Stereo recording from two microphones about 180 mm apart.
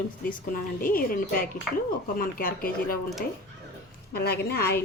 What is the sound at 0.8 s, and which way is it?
Speech, 50° left (ahead or behind).